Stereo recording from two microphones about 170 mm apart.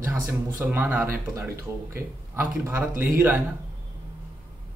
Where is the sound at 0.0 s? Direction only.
20° right (ahead or behind).